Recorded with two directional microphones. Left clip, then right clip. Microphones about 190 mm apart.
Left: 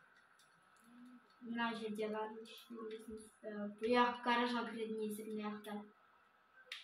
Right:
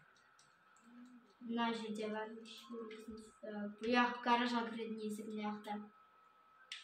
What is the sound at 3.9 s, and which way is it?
Speech, 20° right (ahead or behind).